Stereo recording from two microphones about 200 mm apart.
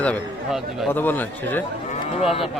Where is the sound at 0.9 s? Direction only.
10° left (ahead or behind).